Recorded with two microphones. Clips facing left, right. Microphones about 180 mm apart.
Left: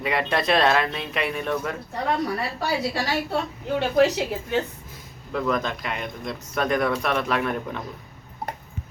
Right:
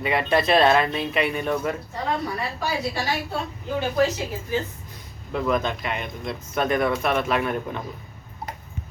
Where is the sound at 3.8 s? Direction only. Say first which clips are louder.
Left 3 dB; 70° left (ahead or behind).